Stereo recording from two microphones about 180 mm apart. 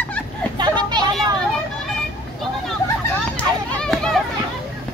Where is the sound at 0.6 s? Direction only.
25° right (ahead or behind).